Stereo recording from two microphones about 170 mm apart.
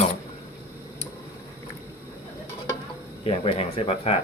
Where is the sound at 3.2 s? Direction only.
35° left (ahead or behind).